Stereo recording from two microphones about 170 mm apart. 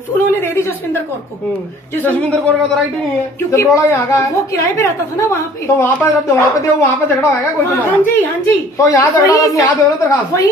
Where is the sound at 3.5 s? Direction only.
20° left (ahead or behind).